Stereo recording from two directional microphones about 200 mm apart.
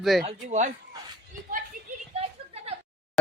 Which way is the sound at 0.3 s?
35° right (ahead or behind).